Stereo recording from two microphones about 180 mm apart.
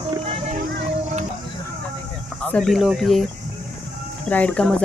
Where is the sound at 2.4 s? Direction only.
5° left (ahead or behind).